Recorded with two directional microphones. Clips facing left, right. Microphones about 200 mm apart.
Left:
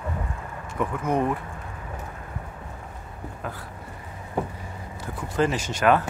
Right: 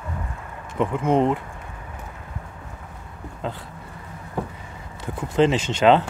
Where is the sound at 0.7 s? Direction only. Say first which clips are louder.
Right 5 dB; 25° right (ahead or behind).